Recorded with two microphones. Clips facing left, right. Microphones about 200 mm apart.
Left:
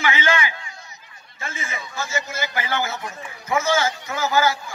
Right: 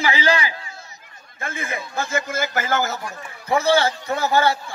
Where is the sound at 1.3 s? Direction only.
55° right (ahead or behind).